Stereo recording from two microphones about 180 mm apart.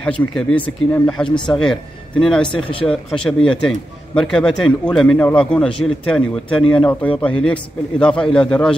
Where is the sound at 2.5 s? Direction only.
30° left (ahead or behind).